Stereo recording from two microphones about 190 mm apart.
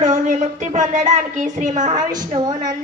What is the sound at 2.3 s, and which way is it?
Speech, 25° right (ahead or behind).